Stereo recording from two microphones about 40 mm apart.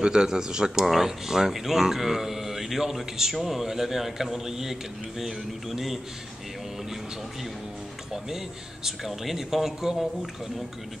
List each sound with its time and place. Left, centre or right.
0.0 s speech: centre
8.8 s speech: centre